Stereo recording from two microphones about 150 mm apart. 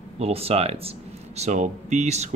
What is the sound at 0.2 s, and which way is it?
Speech, 40° right (ahead or behind).